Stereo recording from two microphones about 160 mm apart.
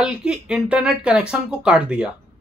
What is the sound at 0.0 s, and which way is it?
Speech, 5° right (ahead or behind).